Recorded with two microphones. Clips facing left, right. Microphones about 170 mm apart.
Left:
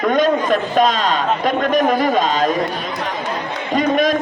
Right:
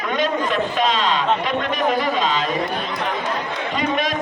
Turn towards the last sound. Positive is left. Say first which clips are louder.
# left 6 dB
turn(degrees=45)  # may be behind; listen again after turning